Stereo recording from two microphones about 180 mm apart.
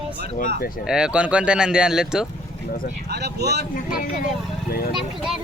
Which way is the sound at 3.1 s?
65° right (ahead or behind).